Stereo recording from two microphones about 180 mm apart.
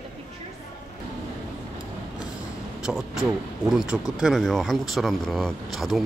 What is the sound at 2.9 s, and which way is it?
Speech, centre (ahead or behind).